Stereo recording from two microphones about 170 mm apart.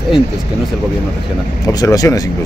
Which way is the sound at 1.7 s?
20° left (ahead or behind).